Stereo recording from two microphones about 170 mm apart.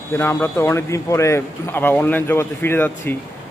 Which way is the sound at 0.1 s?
15° left (ahead or behind).